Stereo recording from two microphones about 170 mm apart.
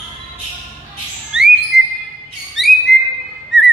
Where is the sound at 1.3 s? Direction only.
5° right (ahead or behind).